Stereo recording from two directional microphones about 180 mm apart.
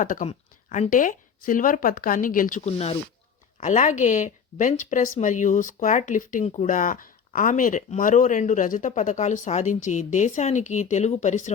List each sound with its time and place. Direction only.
0.0 s speech: 45° left (ahead or behind)